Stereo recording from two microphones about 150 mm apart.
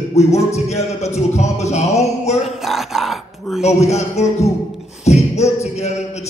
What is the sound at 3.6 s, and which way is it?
A man's voice, 45° left (ahead or behind).